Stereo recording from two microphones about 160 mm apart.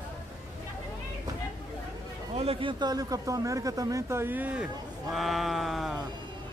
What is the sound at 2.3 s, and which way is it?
Speech, 35° right (ahead or behind).